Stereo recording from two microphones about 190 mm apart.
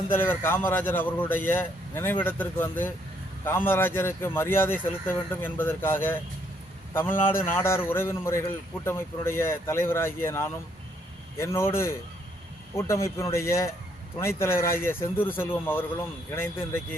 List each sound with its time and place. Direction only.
0.1 s a man's voice: 10° left (ahead or behind)